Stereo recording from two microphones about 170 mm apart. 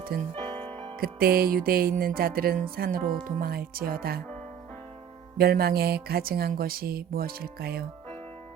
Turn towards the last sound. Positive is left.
turn(degrees=-65)  # may be behind; listen again after turning